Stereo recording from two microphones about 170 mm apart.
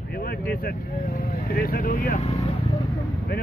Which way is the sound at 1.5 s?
60° left (ahead or behind).